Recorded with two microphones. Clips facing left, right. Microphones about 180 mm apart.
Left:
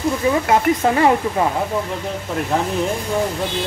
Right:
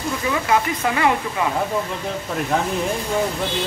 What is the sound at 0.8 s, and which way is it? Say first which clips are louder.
Speech: left 4 dB; 35° left (ahead or behind).